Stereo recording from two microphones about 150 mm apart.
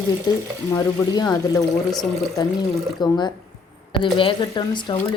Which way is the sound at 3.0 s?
30° left (ahead or behind).